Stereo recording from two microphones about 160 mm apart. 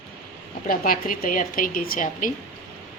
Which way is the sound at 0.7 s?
60° left (ahead or behind).